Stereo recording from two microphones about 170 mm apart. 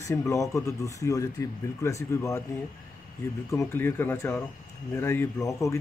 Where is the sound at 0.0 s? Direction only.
20° left (ahead or behind).